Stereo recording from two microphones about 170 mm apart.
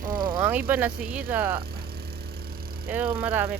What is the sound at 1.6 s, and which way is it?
Vehicle, 65° right (ahead or behind).